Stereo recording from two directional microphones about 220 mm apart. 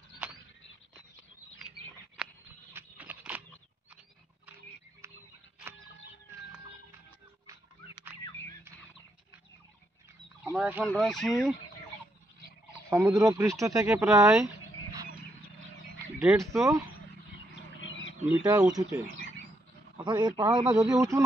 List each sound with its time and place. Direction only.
2.7 s a sound: 10° right (ahead or behind)
7.4 s wild animals: 10° right (ahead or behind)
10.5 s speech: centre (ahead or behind)
12.9 s speech: 15° right (ahead or behind)
16.2 s speech: 10° right (ahead or behind)
17.7 s bird: 60° left (ahead or behind)
18.3 s a man's voice: 15° right (ahead or behind)